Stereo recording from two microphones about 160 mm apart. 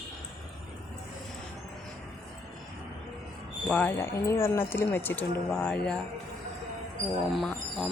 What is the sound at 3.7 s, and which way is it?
Speech, 10° left (ahead or behind).